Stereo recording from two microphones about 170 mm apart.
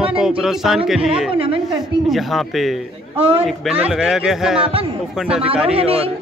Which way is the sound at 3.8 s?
5° right (ahead or behind).